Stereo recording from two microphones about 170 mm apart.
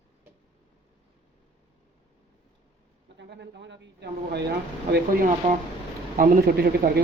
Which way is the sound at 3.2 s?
90° right.